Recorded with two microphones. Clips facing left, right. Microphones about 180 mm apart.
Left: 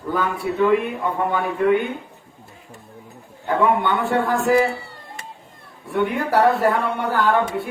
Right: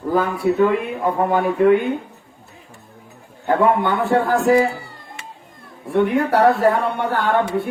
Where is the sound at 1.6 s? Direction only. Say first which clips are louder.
Right 3 dB; centre (ahead or behind).